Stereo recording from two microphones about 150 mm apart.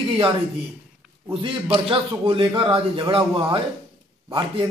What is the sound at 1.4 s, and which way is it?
A man's voice, 35° right (ahead or behind).